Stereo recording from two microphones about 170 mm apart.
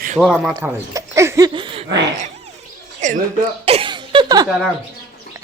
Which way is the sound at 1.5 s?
30° right (ahead or behind).